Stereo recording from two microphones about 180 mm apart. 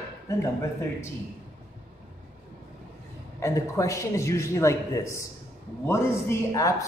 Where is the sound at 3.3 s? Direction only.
15° left (ahead or behind).